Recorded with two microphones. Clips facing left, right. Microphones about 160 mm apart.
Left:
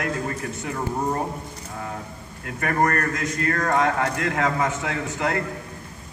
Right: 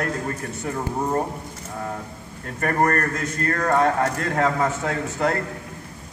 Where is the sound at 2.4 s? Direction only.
40° right (ahead or behind).